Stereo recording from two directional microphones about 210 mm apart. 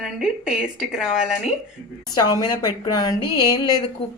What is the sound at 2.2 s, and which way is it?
A woman's voice, 20° left (ahead or behind).